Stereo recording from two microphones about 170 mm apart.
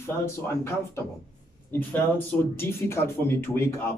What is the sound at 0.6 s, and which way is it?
Speech, 15° left (ahead or behind).